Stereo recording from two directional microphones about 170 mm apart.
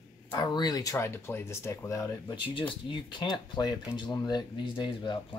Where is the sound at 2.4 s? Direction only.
30° left (ahead or behind).